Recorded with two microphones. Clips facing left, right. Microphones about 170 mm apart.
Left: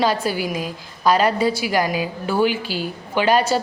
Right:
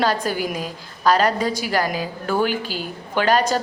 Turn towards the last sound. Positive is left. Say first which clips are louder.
# left 1 dB
turn(degrees=10)  # may be behind; listen again after turning